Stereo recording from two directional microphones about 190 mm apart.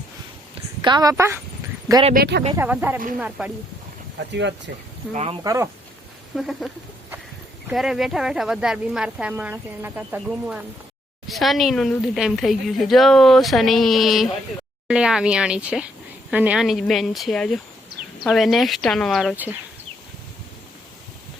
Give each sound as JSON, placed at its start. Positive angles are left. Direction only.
{"t": 0.9, "sound": "speech", "side_deg": -20}
{"t": 2.1, "sound": "speech", "side_deg": -60}
{"t": 2.5, "sound": "speech", "side_deg": -10}
{"t": 4.3, "sound": "speech", "side_deg": -70}
{"t": 5.1, "sound": "speech", "side_deg": -35}
{"t": 5.4, "sound": "speech", "side_deg": -15}
{"t": 6.3, "sound": "speech", "side_deg": 0}
{"t": 7.7, "sound": "speech", "side_deg": 0}